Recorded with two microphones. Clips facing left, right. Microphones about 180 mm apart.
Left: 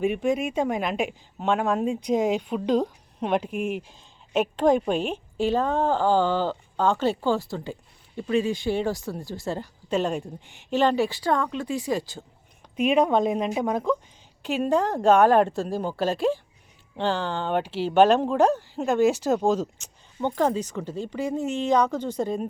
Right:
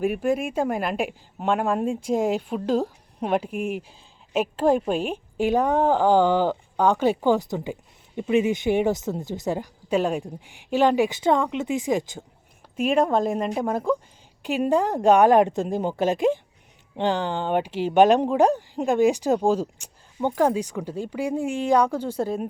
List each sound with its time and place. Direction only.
0.0 s a woman's voice: 5° right (ahead or behind); by 12.2 s 20° right (ahead or behind)
12.8 s a woman's voice: centre (ahead or behind)